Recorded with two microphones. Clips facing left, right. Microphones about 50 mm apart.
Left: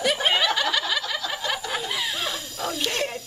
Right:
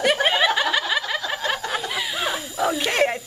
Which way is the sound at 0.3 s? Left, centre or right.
Centre.